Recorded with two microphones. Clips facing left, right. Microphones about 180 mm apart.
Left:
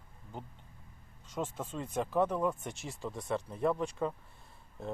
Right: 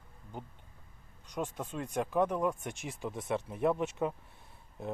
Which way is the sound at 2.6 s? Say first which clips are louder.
Right 1 dB; 15° right (ahead or behind).